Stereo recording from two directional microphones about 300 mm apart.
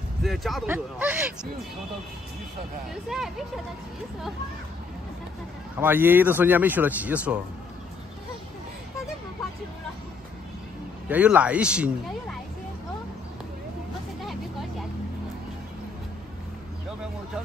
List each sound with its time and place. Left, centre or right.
0.2 s speech: centre
2.9 s speech: centre
5.8 s speech: centre
11.1 s speech: centre
14.2 s vehicle: centre